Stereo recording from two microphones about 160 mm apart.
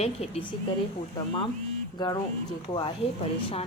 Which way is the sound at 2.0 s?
25° left (ahead or behind).